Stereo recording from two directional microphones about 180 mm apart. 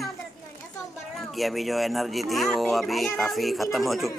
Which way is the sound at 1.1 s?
Centre (ahead or behind).